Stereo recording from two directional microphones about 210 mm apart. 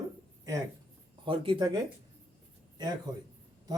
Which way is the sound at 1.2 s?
25° right (ahead or behind).